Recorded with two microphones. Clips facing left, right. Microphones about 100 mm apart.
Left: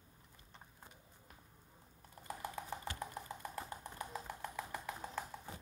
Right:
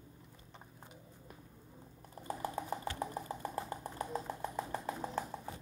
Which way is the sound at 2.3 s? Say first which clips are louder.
Right 5 dB; 40° right (ahead or behind).